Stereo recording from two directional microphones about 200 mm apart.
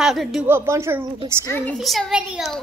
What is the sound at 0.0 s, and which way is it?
Speech, centre (ahead or behind).